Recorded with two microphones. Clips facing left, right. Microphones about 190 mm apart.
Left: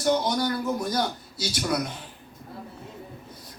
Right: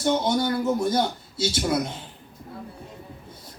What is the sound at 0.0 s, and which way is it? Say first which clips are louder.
Speech: right 1 dB; 25° right (ahead or behind).